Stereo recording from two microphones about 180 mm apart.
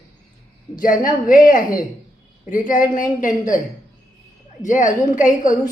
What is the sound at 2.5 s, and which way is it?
A woman's voice, 45° left (ahead or behind).